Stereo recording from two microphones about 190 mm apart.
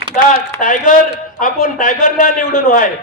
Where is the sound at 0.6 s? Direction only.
45° left (ahead or behind).